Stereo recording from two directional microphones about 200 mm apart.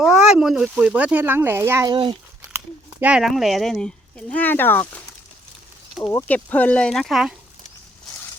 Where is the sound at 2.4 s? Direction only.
10° right (ahead or behind); by 5.0 s 10° left (ahead or behind).